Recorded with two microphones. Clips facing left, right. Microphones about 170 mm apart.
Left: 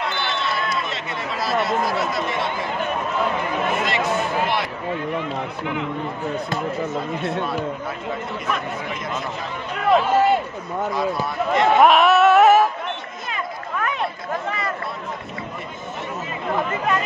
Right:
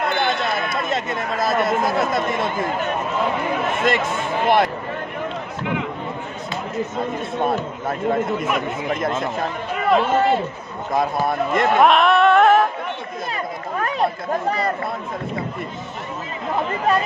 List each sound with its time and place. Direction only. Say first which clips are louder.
0.0 s speech: right 5 dB; 50° right (ahead or behind)
3.8 s speech: right 1 dB; 50° right (ahead or behind)
9.8 s speech: even; centre (ahead or behind)
10.9 s speech: right 6 dB; 50° right (ahead or behind)
11.8 s music: even; 5° left (ahead or behind)
13.7 s chatter: right 2 dB; 35° right (ahead or behind)